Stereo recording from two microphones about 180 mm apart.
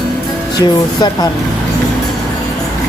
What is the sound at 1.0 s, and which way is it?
Speech, 25° left (ahead or behind).